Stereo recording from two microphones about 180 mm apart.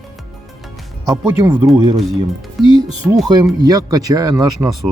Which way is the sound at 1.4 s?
15° right (ahead or behind).